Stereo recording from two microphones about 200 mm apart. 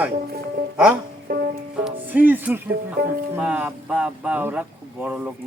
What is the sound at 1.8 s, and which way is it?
Speech, 10° right (ahead or behind).